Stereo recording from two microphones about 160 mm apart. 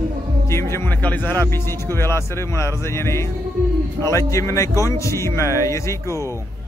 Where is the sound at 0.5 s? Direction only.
15° left (ahead or behind).